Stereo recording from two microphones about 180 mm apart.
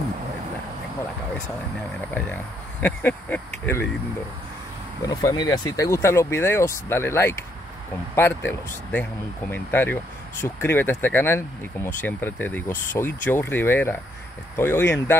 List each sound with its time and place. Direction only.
2.8 s speech: 10° left (ahead or behind)
5.0 s speech: 20° left (ahead or behind)